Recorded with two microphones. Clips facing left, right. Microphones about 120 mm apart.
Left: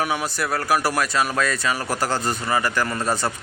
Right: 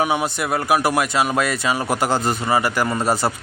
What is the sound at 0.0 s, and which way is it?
Speech, 20° right (ahead or behind).